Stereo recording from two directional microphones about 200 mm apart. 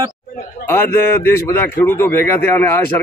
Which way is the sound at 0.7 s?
10° left (ahead or behind).